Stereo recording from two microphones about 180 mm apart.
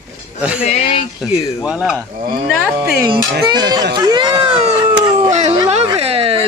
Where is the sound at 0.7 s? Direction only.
35° left (ahead or behind).